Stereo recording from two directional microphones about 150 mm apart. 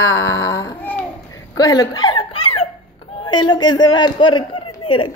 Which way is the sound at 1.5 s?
25° left (ahead or behind).